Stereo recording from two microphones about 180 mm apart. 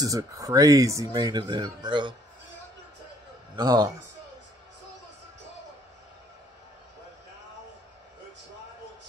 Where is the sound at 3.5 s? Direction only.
20° right (ahead or behind).